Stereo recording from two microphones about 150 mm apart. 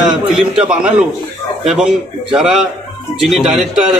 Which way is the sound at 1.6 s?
5° right (ahead or behind).